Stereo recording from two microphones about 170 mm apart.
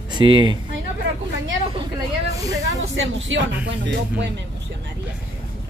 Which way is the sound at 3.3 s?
90° right.